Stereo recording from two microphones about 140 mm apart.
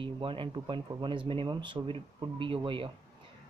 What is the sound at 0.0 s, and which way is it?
Speech, 35° right (ahead or behind).